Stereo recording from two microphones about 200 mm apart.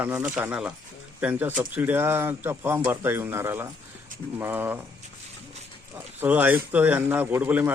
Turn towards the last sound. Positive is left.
turn(degrees=-10)  # may be behind; listen again after turning